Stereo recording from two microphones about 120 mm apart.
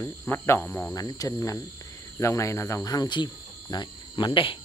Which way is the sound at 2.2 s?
25° left (ahead or behind).